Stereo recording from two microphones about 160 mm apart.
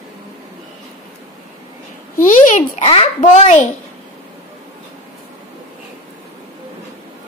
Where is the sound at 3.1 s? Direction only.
50° left (ahead or behind).